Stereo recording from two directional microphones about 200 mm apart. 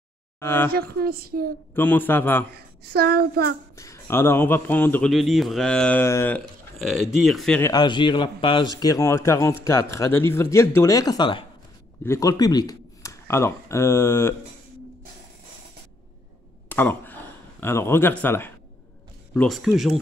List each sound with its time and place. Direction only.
0.4 s speech: 10° left (ahead or behind)
0.7 s a child's voice: 50° right (ahead or behind)
1.8 s a man's voice: 10° left (ahead or behind)
2.5 s a child's voice: 50° right (ahead or behind)
3.7 s a man's voice: 15° left (ahead or behind)
7.7 s a man's voice: 20° left (ahead or behind)
16.6 s speech: 10° left (ahead or behind)